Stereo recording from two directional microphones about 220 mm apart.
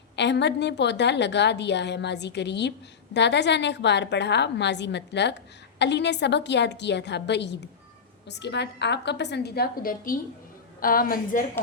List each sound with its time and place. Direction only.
0.2 s a woman's voice: 50° left (ahead or behind)